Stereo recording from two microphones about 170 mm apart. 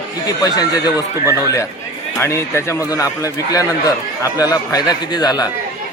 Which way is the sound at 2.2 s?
15° left (ahead or behind).